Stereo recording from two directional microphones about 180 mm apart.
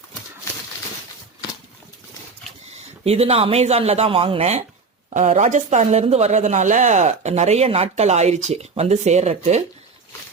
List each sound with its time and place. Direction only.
3.0 s speech: 35° right (ahead or behind)